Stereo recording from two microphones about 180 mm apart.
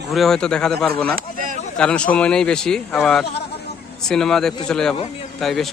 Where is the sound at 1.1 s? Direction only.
50° right (ahead or behind).